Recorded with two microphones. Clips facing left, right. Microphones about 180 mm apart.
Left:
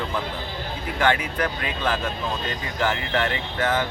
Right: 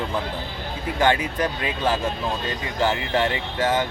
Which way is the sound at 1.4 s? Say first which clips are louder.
Right 2 dB; 30° right (ahead or behind).